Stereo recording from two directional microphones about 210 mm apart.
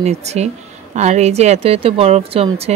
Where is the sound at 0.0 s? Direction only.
30° right (ahead or behind).